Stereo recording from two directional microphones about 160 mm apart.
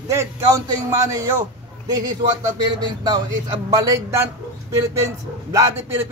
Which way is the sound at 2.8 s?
25° right (ahead or behind).